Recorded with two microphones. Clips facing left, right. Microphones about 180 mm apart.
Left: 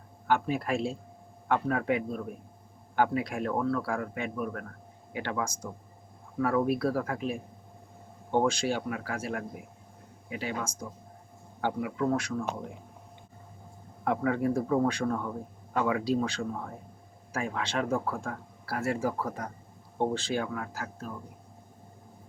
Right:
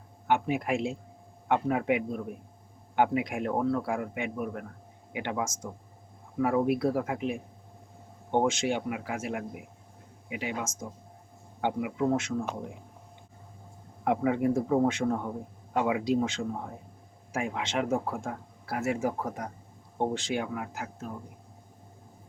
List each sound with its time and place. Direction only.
0.3 s speech: 20° right (ahead or behind)
14.0 s speech: 20° right (ahead or behind)